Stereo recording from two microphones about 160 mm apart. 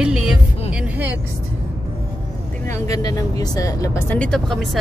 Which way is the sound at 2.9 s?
25° left (ahead or behind).